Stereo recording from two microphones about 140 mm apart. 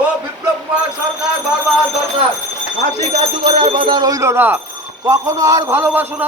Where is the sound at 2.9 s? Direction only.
45° right (ahead or behind).